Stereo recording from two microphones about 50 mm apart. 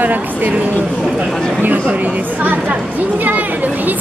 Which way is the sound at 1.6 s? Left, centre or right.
Right.